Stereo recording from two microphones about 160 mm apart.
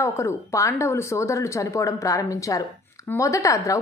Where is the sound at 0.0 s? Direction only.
20° left (ahead or behind).